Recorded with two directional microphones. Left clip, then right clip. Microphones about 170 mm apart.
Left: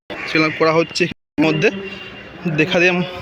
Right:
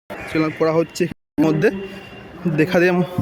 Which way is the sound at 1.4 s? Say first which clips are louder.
Left 1 dB; 30° right (ahead or behind).